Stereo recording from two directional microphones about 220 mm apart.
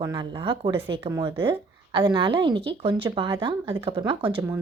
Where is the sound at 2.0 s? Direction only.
20° right (ahead or behind).